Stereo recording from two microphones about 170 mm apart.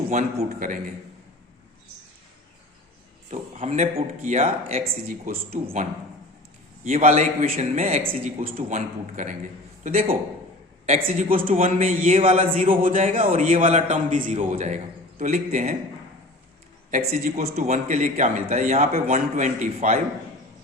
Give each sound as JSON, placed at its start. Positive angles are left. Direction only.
{"t": 0.1, "sound": "a man's voice", "side_deg": -45}
{"t": 3.2, "sound": "a man's voice", "side_deg": -40}
{"t": 6.9, "sound": "a man's voice", "side_deg": -45}
{"t": 11.0, "sound": "speech", "side_deg": -55}
{"t": 11.6, "sound": "speech", "side_deg": -40}
{"t": 12.8, "sound": "a man's voice", "side_deg": -50}
{"t": 16.9, "sound": "a man's voice", "side_deg": -45}